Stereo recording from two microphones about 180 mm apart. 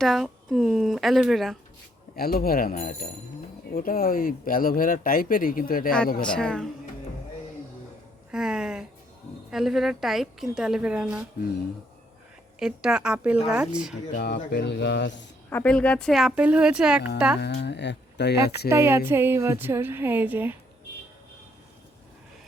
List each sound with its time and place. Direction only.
0.0 s a woman's voice: centre (ahead or behind)
2.1 s speech: 55° left (ahead or behind)
6.2 s a woman's voice: 5° left (ahead or behind)
8.3 s a woman's voice: 5° right (ahead or behind)
12.5 s a woman's voice: 5° right (ahead or behind)
14.5 s speech: 70° left (ahead or behind)
15.4 s a woman's voice: 10° left (ahead or behind)
17.4 s speech: 70° left (ahead or behind)
18.7 s a woman's voice: 15° right (ahead or behind)